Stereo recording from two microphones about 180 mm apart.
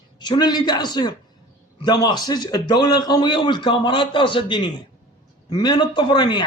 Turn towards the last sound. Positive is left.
turn(degrees=25)  # may be behind; listen again after turning